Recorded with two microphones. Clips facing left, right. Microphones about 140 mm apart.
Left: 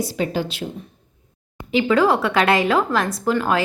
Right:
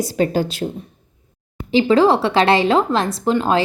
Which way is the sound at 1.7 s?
30° right (ahead or behind).